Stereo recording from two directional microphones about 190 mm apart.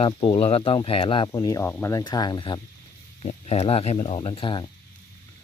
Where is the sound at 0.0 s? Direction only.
30° left (ahead or behind).